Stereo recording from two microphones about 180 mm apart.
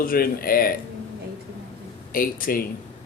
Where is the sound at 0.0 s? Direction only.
55° left (ahead or behind).